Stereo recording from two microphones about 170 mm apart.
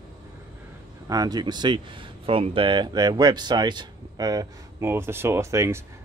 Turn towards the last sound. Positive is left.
turn(degrees=-15)  # may be behind; listen again after turning